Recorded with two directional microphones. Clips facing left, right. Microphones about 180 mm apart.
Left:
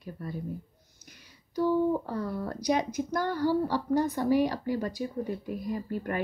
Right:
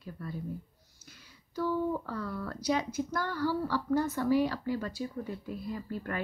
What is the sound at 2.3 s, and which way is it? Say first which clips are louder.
Speech: left 4 dB; 40° left (ahead or behind).